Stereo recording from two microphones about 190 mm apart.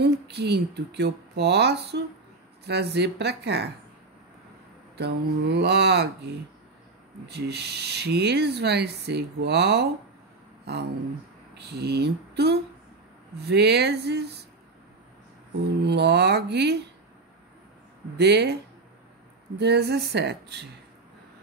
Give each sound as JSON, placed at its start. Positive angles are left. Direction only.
{"t": 0.0, "sound": "speech", "side_deg": -60}
{"t": 4.9, "sound": "speech", "side_deg": -60}
{"t": 15.8, "sound": "speech", "side_deg": -60}
{"t": 18.1, "sound": "speech", "side_deg": -60}
{"t": 19.6, "sound": "speech", "side_deg": -60}